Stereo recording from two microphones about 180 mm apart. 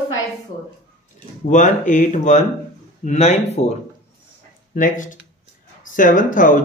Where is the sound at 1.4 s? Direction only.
45° left (ahead or behind).